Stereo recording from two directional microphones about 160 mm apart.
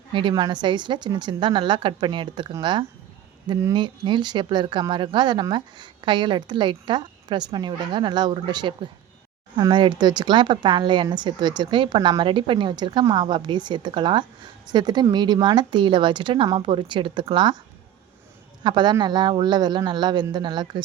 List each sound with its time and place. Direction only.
0.1 s speech: 30° right (ahead or behind)
18.6 s speech: 30° right (ahead or behind)